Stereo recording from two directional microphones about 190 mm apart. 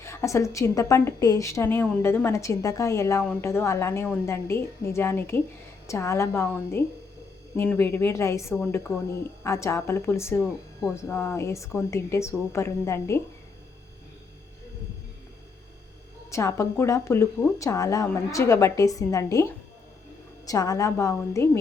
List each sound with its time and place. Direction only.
0.0 s a woman's voice: 15° left (ahead or behind)
16.3 s a woman's voice: 15° left (ahead or behind)